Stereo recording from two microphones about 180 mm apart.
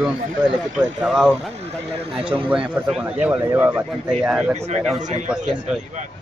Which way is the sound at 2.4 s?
30° right (ahead or behind).